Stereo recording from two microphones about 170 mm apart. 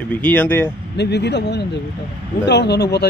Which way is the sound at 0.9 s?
80° left.